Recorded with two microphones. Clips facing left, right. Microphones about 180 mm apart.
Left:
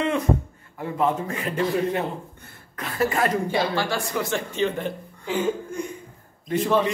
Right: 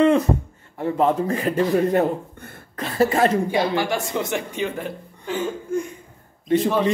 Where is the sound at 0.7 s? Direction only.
35° right (ahead or behind).